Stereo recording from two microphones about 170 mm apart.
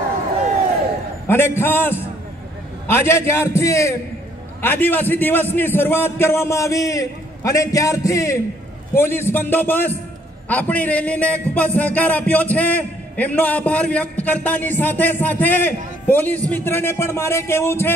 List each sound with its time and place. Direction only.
1.2 s a man's voice: 15° left (ahead or behind)